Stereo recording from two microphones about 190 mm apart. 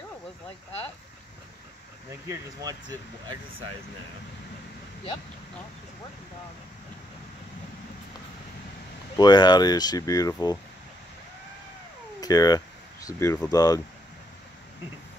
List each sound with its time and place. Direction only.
2.2 s speech: 20° right (ahead or behind)
9.1 s speech: 20° left (ahead or behind)
12.2 s speech: 20° left (ahead or behind)